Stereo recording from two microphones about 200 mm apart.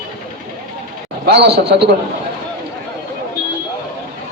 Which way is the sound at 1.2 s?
55° right (ahead or behind).